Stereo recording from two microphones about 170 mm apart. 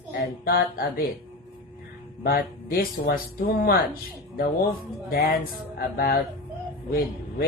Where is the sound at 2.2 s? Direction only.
65° left (ahead or behind).